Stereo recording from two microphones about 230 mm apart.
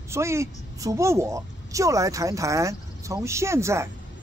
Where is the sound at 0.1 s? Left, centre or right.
Centre.